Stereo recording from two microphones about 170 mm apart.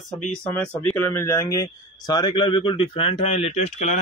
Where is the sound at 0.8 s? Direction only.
15° left (ahead or behind).